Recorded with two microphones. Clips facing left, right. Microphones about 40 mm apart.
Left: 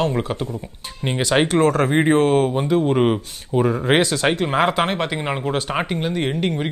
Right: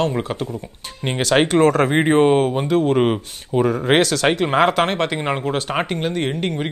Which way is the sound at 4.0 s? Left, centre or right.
Right.